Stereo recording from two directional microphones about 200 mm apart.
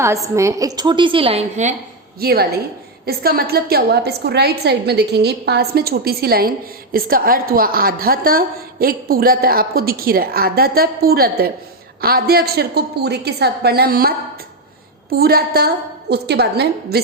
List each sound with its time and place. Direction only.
0.0 s a woman's voice: 15° right (ahead or behind); by 1.7 s 35° right (ahead or behind)
2.2 s a woman's voice: 50° right (ahead or behind)
15.1 s a woman's voice: 50° right (ahead or behind)